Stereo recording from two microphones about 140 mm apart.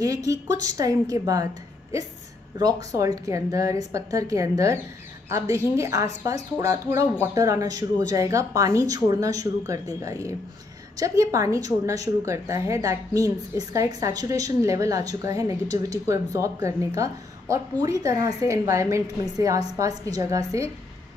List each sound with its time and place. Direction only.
0.0 s a woman's voice: 25° right (ahead or behind)